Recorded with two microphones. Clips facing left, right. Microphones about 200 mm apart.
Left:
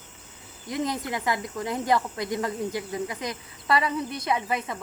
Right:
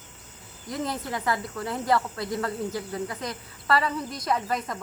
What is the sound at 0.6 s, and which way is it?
Speech, 10° left (ahead or behind).